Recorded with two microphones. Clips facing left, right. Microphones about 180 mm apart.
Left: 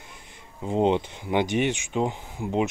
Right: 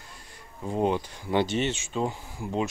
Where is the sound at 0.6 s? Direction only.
20° left (ahead or behind).